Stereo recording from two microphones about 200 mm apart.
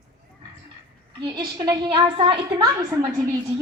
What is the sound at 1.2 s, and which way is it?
A woman's voice, 20° right (ahead or behind).